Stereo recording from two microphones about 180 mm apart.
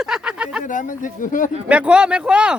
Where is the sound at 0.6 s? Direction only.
45° left (ahead or behind).